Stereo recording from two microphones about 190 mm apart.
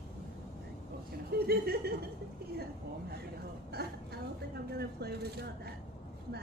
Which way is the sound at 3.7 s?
55° right (ahead or behind).